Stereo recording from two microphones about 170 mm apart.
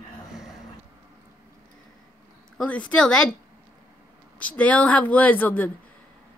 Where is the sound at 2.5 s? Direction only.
5° left (ahead or behind).